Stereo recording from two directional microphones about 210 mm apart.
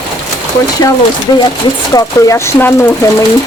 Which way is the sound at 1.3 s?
20° left (ahead or behind).